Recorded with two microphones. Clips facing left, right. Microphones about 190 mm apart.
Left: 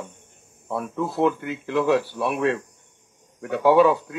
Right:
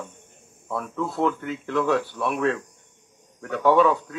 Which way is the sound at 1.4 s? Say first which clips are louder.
Even; 20° left (ahead or behind).